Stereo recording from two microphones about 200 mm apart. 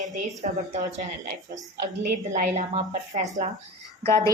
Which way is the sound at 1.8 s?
50° right (ahead or behind).